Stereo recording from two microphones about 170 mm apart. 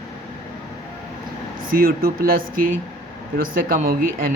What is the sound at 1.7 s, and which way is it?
Speech, 60° right (ahead or behind).